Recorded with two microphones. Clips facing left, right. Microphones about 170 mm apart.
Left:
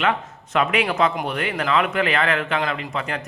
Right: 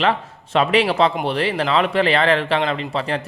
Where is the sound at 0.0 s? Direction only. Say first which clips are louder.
Right 3 dB; 30° right (ahead or behind).